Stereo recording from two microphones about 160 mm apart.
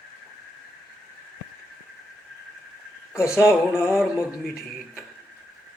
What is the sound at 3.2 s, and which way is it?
Speech, 15° left (ahead or behind).